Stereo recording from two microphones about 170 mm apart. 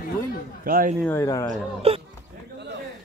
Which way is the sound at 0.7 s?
55° right (ahead or behind).